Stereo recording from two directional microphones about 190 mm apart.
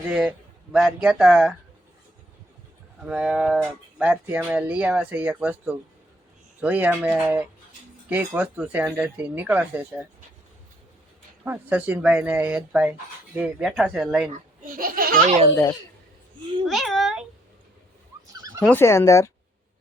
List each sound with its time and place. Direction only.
0.1 s a man's voice: 5° right (ahead or behind)
3.0 s speech: 5° right (ahead or behind)
11.4 s speech: 10° right (ahead or behind)
14.8 s speech: 50° right (ahead or behind)
16.6 s speech: centre (ahead or behind)
18.3 s a sound: 20° right (ahead or behind)
18.6 s speech: 10° left (ahead or behind)